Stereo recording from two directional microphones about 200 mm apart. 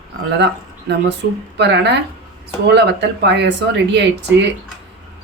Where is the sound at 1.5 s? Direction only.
55° right (ahead or behind).